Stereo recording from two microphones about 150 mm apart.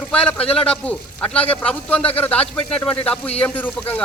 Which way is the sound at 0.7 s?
10° left (ahead or behind).